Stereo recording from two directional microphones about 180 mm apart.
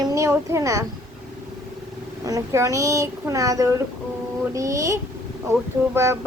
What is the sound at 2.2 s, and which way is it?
A child's voice, 20° right (ahead or behind).